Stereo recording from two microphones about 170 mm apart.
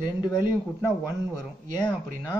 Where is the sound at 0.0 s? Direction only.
25° left (ahead or behind).